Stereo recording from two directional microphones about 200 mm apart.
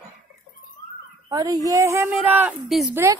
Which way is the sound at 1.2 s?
15° right (ahead or behind).